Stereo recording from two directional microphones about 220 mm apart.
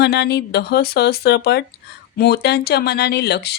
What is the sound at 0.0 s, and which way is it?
Speech, 50° left (ahead or behind).